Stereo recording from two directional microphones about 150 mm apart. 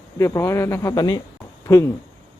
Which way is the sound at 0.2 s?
20° left (ahead or behind).